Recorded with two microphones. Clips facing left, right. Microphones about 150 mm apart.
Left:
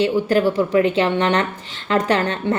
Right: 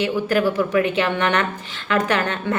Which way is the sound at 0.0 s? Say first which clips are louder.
Left 3 dB; 30° left (ahead or behind).